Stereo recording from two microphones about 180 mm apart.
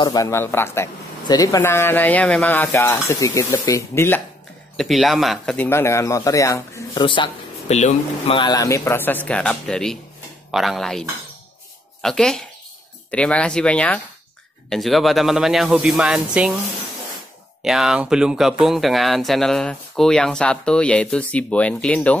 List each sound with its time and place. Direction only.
0.0 s speech: 20° left (ahead or behind)
4.7 s speech: centre (ahead or behind); by 7.7 s 25° left (ahead or behind)
7.7 s speech: 40° left (ahead or behind)
8.4 s speech: 20° left (ahead or behind); by 16.5 s 5° right (ahead or behind)
17.6 s speech: centre (ahead or behind)